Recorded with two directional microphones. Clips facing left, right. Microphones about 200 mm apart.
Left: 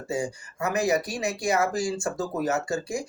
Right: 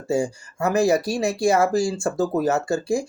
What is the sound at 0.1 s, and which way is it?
Speech, 25° right (ahead or behind).